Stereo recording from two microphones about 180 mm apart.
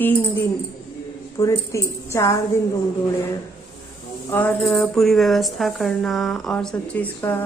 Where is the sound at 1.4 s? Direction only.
15° left (ahead or behind).